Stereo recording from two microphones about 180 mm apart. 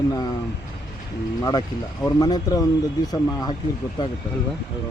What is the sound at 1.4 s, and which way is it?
Speech, 20° left (ahead or behind).